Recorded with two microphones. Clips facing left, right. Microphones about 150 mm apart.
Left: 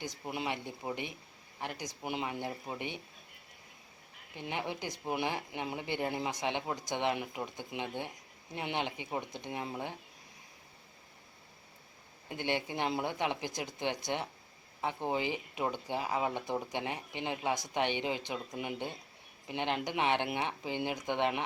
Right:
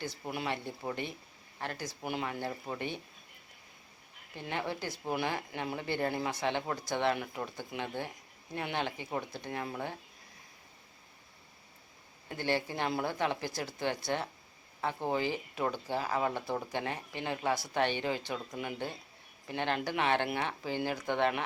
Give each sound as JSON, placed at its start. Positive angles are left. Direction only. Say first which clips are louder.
{"t": 0.0, "sound": "speech", "louder": "right 1 dB", "side_deg": 20}
{"t": 4.4, "sound": "speech", "louder": "right 1 dB", "side_deg": 15}
{"t": 12.3, "sound": "speech", "louder": "right 2 dB", "side_deg": 20}